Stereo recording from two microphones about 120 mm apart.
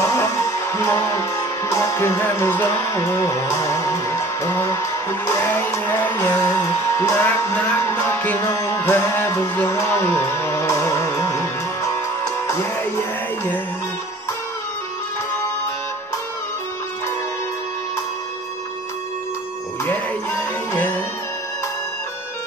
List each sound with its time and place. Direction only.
0.0 s music: 25° left (ahead or behind)